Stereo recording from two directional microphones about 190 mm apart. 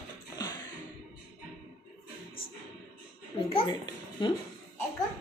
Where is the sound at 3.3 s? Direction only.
25° left (ahead or behind).